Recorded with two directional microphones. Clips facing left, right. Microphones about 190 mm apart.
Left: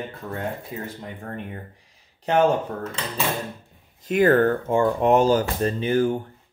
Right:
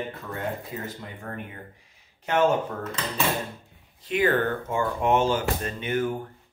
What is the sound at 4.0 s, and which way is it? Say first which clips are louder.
Speech: left 6 dB; 45° left (ahead or behind).